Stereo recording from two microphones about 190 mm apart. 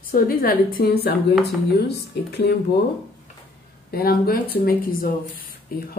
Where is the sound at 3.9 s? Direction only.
55° left (ahead or behind).